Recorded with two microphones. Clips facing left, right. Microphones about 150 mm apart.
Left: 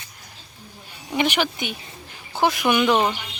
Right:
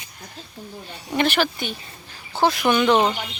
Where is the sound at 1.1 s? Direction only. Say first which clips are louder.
Right 1 dB; 15° left (ahead or behind).